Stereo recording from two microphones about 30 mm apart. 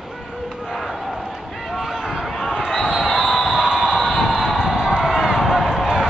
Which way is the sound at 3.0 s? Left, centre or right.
Centre.